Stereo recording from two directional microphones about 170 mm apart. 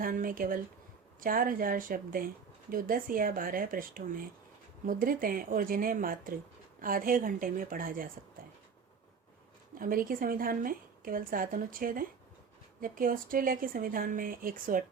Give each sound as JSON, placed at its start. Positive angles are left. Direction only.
{"t": 0.0, "sound": "speech", "side_deg": -55}
{"t": 9.7, "sound": "speech", "side_deg": -55}